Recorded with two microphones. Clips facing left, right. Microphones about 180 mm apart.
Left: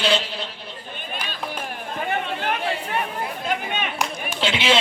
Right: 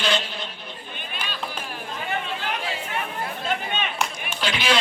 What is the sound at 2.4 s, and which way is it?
Chatter, 60° left (ahead or behind).